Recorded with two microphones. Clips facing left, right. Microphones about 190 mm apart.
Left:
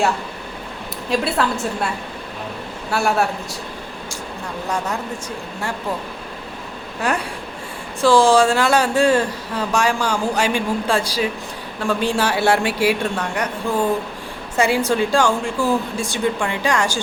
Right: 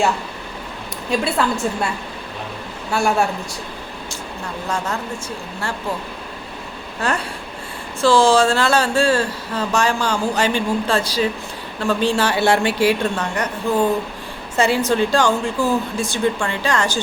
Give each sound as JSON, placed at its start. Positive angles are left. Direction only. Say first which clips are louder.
{"t": 1.1, "sound": "a woman's voice", "louder": "even", "side_deg": 0}
{"t": 2.9, "sound": "a woman's voice", "louder": "right 1 dB", "side_deg": 0}
{"t": 7.0, "sound": "speech", "louder": "left 1 dB", "side_deg": 15}
{"t": 14.5, "sound": "speech", "louder": "even", "side_deg": 10}